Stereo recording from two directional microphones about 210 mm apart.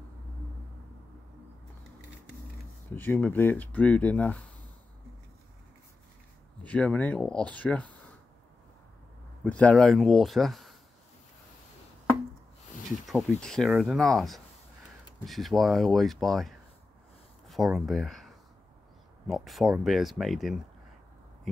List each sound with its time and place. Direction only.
2.9 s speech: 10° left (ahead or behind)
6.6 s speech: 5° left (ahead or behind)
9.4 s speech: 5° left (ahead or behind)
12.9 s speech: centre (ahead or behind)